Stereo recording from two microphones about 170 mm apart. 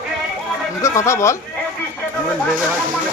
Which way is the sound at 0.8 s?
15° left (ahead or behind).